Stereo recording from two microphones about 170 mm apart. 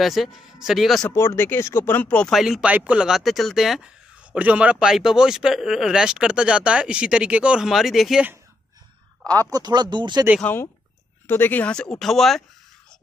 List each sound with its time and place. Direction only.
0.0 s speech: centre (ahead or behind)
1.1 s speech: 15° left (ahead or behind); by 8.4 s 5° right (ahead or behind)
9.3 s speech: 20° right (ahead or behind)
10.4 s speech: 10° left (ahead or behind)